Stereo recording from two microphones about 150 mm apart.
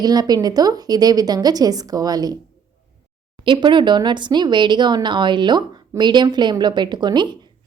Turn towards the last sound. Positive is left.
turn(degrees=-30)  # may be behind; listen again after turning